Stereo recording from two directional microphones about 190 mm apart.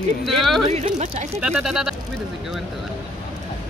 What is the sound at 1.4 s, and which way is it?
Speech, centre (ahead or behind).